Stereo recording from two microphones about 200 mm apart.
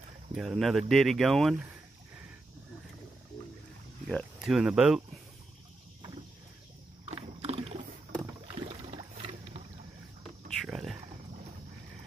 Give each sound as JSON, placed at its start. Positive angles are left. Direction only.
{"t": 0.4, "sound": "speech", "side_deg": 0}
{"t": 4.1, "sound": "speech", "side_deg": 0}
{"t": 7.1, "sound": "rowboat", "side_deg": -30}
{"t": 10.2, "sound": "a sound", "side_deg": 0}